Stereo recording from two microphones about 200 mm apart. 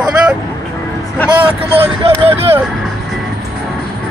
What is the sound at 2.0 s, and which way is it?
Speech, 25° right (ahead or behind).